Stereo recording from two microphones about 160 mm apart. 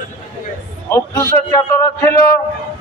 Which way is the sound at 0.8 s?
15° left (ahead or behind).